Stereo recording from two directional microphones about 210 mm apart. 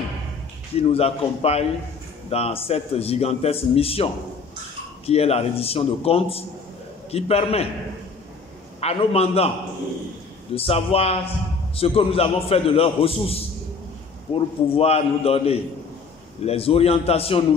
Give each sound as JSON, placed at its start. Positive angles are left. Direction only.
{"t": 0.7, "sound": "a man's voice", "side_deg": 30}
{"t": 8.8, "sound": "a man's voice", "side_deg": 30}
{"t": 10.5, "sound": "a man's voice", "side_deg": 25}